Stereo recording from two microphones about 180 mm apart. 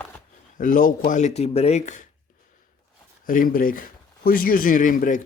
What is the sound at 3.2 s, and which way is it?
Speech, 50° left (ahead or behind).